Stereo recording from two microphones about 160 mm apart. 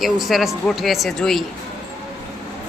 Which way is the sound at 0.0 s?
Centre (ahead or behind).